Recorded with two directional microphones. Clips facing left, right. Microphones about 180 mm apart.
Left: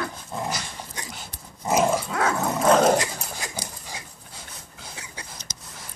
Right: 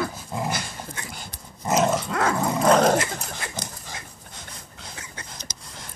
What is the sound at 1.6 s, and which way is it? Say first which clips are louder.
Dog: even; 5° left (ahead or behind).